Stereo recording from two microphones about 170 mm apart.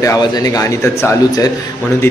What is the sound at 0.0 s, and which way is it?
A man's voice, 20° left (ahead or behind).